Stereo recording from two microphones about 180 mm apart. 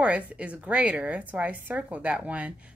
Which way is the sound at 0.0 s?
5° right (ahead or behind).